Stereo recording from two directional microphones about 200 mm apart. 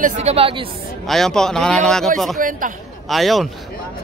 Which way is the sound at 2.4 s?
45° right (ahead or behind).